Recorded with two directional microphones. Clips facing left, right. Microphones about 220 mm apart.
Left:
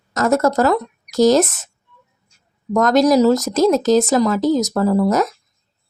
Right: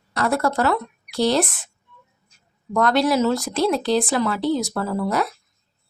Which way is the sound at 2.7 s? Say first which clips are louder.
Left 5 dB; 40° left (ahead or behind).